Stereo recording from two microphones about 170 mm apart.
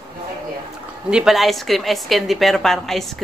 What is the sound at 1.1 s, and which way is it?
A woman's voice, centre (ahead or behind).